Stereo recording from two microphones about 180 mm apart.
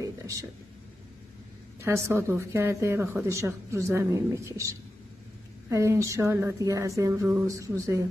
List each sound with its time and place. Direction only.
1.8 s speech: 15° right (ahead or behind)